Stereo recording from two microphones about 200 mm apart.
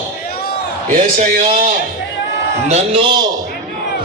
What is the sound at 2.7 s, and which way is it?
Speech, 30° right (ahead or behind).